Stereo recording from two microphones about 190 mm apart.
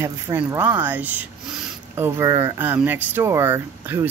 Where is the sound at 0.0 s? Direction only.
10° right (ahead or behind).